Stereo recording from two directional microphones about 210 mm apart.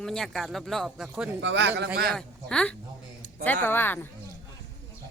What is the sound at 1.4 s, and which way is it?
Speech, 55° right (ahead or behind).